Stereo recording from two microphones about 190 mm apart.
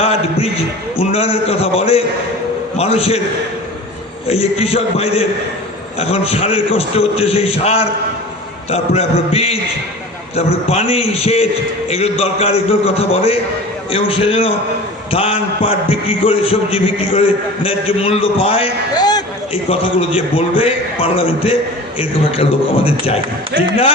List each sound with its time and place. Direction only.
0.0 s a sound: 30° left (ahead or behind)
0.9 s a man's voice: 30° left (ahead or behind)
4.3 s a man's voice: 30° left (ahead or behind)